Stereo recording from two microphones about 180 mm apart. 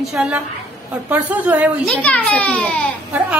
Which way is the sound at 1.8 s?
5° left (ahead or behind).